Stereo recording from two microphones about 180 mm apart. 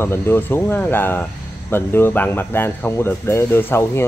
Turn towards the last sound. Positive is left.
turn(degrees=15)  # may be behind; listen again after turning